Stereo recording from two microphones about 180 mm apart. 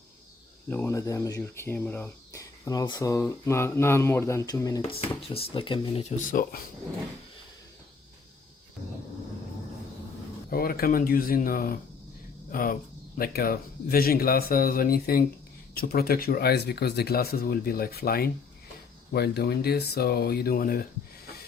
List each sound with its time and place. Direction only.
0.7 s speech: 15° left (ahead or behind)
4.8 s speech: 30° left (ahead or behind)
6.1 s speech: 45° left (ahead or behind)
10.5 s speech: 55° left (ahead or behind)